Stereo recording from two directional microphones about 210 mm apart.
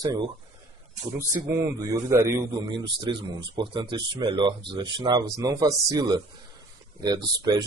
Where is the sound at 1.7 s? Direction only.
15° right (ahead or behind).